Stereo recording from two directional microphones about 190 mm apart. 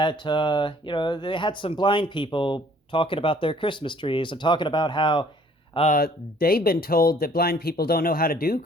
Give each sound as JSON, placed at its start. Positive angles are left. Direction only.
{"t": 0.0, "sound": "speech", "side_deg": 25}
{"t": 5.9, "sound": "speech", "side_deg": 50}